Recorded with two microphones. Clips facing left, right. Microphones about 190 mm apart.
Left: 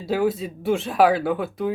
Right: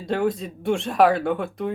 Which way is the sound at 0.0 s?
5° left (ahead or behind).